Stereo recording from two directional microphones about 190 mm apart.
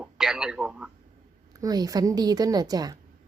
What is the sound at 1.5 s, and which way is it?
A woman's voice, 20° right (ahead or behind).